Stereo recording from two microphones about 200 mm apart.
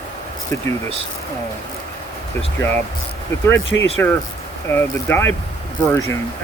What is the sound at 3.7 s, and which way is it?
Speech, 10° left (ahead or behind).